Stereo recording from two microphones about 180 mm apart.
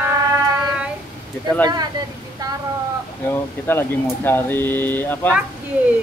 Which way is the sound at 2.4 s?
20° right (ahead or behind).